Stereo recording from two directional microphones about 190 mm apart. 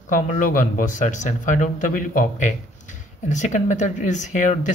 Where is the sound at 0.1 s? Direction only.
45° left (ahead or behind).